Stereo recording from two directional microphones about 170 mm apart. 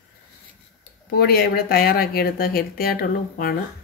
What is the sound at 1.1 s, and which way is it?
Speech, 65° left (ahead or behind).